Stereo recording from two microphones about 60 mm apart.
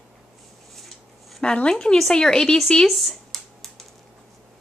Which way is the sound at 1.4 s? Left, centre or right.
Centre.